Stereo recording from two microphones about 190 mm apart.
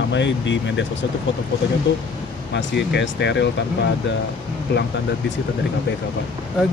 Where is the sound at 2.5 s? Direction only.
70° left (ahead or behind).